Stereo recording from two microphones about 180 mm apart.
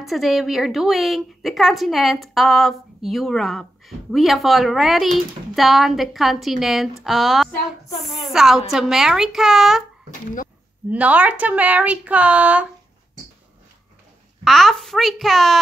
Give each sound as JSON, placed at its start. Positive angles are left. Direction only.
{"t": 0.0, "sound": "a woman's voice", "side_deg": 0}
{"t": 10.9, "sound": "speech", "side_deg": -10}
{"t": 14.4, "sound": "a woman's voice", "side_deg": 0}